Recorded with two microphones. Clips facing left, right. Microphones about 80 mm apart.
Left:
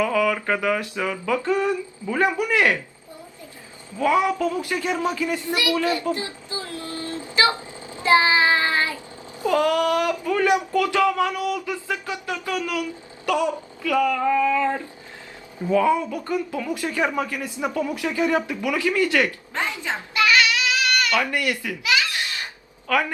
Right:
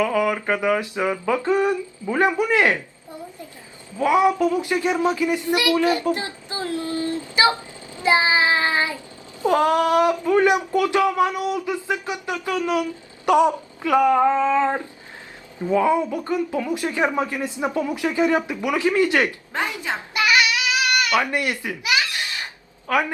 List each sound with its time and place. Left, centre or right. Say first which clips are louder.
0.0 s speech: right 1 dB; right
3.9 s speech: right 2 dB; centre
8.0 s child singing: left 1 dB; centre
9.4 s speech: right 2 dB; right